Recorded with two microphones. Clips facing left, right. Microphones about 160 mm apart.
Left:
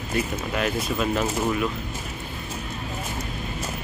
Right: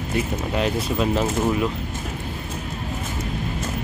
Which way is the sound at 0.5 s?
25° right (ahead or behind).